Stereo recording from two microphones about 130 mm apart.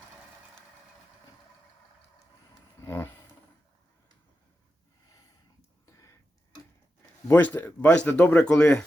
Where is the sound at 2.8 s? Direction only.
20° left (ahead or behind).